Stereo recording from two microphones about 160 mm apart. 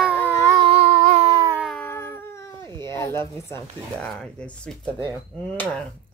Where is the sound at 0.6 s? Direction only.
40° right (ahead or behind).